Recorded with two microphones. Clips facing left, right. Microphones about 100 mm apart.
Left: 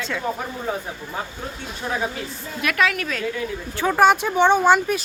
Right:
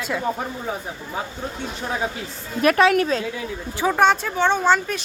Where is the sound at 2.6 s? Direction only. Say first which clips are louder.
Right 6 dB; 35° right (ahead or behind).